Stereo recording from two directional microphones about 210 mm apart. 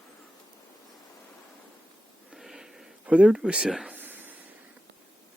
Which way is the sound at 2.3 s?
Centre (ahead or behind).